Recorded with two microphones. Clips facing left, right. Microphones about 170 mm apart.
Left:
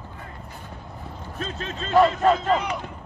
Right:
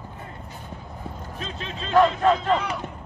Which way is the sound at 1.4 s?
45° left (ahead or behind).